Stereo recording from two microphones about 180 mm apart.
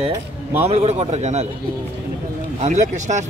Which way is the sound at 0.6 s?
35° right (ahead or behind).